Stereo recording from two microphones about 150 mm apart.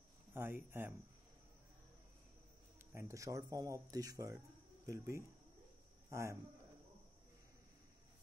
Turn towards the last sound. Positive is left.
turn(degrees=-20)  # may be behind; listen again after turning